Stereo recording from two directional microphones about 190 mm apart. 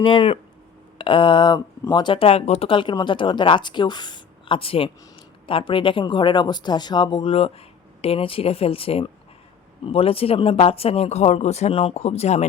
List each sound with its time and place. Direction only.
0.0 s speech: 25° left (ahead or behind)